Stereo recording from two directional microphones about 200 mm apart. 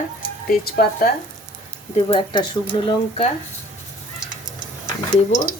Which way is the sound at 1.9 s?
25° left (ahead or behind).